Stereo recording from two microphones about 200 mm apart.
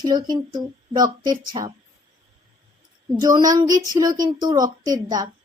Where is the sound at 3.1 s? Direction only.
20° right (ahead or behind).